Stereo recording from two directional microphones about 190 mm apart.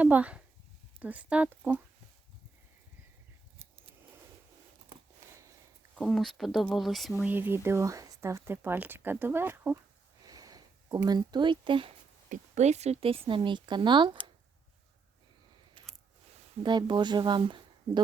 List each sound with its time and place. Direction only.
0.0 s speech: 10° right (ahead or behind)
6.0 s speech: centre (ahead or behind)
10.2 s a sound: 20° right (ahead or behind)
12.3 s speech: 35° right (ahead or behind)
16.6 s speech: 25° right (ahead or behind)